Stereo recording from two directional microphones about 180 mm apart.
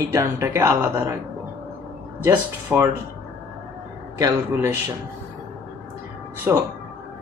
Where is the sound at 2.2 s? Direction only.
10° right (ahead or behind).